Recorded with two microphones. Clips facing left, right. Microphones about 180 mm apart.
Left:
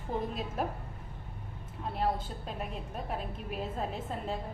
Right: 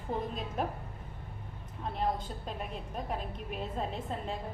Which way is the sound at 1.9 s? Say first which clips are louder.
Left 1 dB; 5° left (ahead or behind).